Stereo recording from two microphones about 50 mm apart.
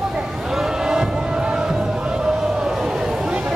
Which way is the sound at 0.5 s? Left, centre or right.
Centre.